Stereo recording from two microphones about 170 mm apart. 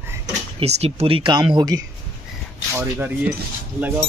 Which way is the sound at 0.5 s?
35° right (ahead or behind).